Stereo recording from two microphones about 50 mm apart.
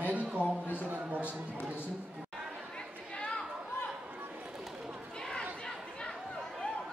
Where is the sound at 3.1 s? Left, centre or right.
Centre.